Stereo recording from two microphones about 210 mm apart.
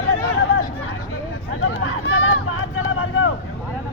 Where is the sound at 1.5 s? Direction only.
80° left.